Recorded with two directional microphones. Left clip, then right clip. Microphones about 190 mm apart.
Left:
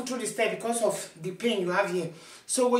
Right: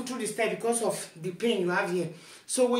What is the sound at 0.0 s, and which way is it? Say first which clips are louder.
Speech: left 1 dB; 25° left (ahead or behind).